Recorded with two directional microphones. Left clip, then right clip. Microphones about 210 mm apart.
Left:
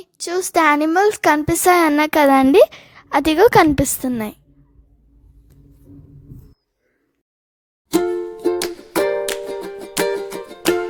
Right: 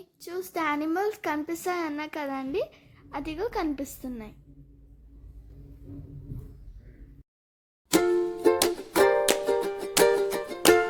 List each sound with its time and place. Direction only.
0.0 s speech: 50° left (ahead or behind)
7.9 s music: centre (ahead or behind)